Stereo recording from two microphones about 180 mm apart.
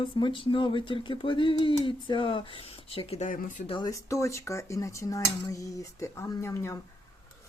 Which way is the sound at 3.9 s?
15° left (ahead or behind).